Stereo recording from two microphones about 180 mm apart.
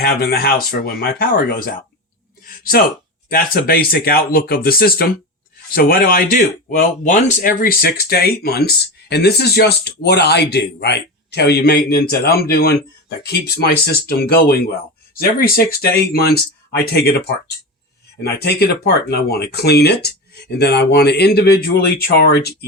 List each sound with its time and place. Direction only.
0.0 s speech: 60° left (ahead or behind)
2.5 s a sound: 55° left (ahead or behind)
3.2 s speech: 55° left (ahead or behind)